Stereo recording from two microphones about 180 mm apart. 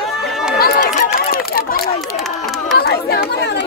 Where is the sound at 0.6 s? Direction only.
55° left (ahead or behind).